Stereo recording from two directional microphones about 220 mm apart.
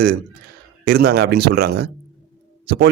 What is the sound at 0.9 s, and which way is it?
A man's voice, 45° right (ahead or behind).